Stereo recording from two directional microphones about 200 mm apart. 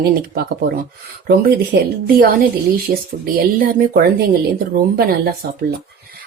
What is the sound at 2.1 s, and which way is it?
Speech, 50° right (ahead or behind).